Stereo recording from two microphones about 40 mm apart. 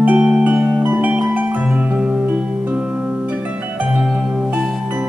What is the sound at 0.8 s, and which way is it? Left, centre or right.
Music, right.